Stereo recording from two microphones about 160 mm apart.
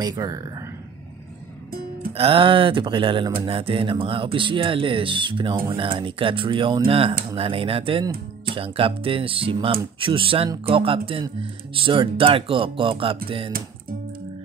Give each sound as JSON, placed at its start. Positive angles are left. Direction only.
{"t": 0.0, "sound": "speech", "side_deg": -25}
{"t": 2.1, "sound": "speech", "side_deg": -35}